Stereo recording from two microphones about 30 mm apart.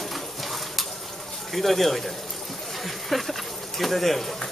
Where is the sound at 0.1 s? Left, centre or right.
Centre.